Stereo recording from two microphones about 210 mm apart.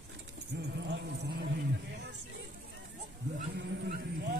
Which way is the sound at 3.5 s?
50° right (ahead or behind).